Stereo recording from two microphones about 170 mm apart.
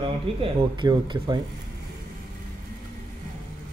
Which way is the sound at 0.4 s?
30° right (ahead or behind).